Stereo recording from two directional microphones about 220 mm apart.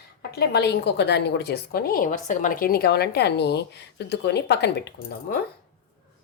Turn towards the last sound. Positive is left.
turn(degrees=50)  # may be behind; listen again after turning